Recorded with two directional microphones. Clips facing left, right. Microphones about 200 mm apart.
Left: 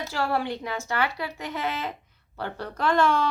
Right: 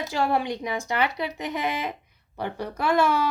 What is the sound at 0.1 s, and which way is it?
Speech, 15° right (ahead or behind).